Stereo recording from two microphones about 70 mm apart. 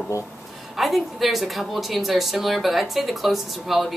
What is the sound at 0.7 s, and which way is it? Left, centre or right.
A woman's voice, centre.